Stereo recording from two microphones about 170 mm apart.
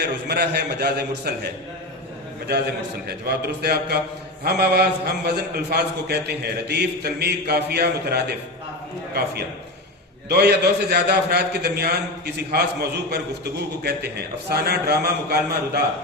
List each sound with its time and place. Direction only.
0.3 s a man's voice: 70° right (ahead or behind)
3.1 s a man's voice: 70° right (ahead or behind)
10.2 s a man's voice: 70° right (ahead or behind)